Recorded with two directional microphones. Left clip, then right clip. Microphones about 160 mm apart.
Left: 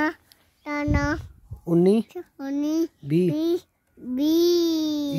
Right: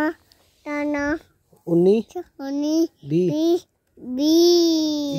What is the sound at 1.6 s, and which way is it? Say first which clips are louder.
Speech: right 3 dB; 30° left (ahead or behind).